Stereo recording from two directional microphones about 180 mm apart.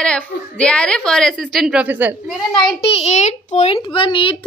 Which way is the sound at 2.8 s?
35° left (ahead or behind).